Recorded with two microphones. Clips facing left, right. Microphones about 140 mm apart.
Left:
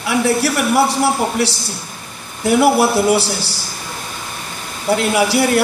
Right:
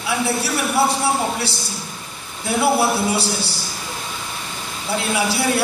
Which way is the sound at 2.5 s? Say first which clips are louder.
Left 5 dB; 65° left (ahead or behind).